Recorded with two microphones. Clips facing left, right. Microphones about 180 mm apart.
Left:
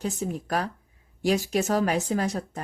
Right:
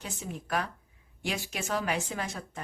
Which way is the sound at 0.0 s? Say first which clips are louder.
Left 10 dB; 40° left (ahead or behind).